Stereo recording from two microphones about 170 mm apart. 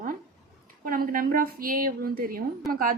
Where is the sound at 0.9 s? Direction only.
55° right (ahead or behind).